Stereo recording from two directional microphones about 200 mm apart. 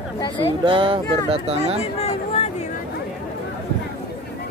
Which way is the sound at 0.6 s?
25° right (ahead or behind).